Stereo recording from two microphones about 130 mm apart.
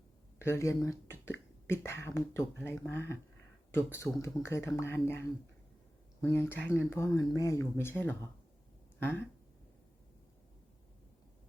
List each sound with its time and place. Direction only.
0.3 s speech: 20° left (ahead or behind)
6.2 s speech: 20° left (ahead or behind)